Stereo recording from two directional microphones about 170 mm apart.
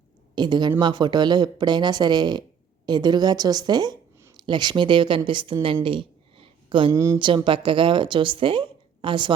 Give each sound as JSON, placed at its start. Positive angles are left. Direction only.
{"t": 0.3, "sound": "a woman's voice", "side_deg": -25}
{"t": 5.8, "sound": "a sound", "side_deg": -30}
{"t": 6.9, "sound": "speech", "side_deg": -15}
{"t": 7.2, "sound": "a woman's voice", "side_deg": -30}